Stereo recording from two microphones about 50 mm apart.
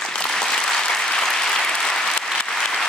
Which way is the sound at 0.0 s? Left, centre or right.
Centre.